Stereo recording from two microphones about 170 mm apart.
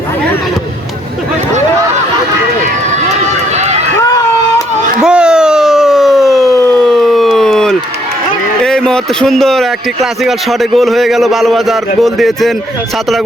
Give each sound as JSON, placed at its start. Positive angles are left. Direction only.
{"t": 3.5, "sound": "run", "side_deg": -40}
{"t": 5.0, "sound": "siren", "side_deg": -5}
{"t": 8.6, "sound": "a man's voice", "side_deg": 5}